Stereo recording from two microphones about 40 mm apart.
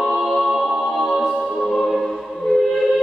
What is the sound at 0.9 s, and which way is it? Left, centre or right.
Music, centre.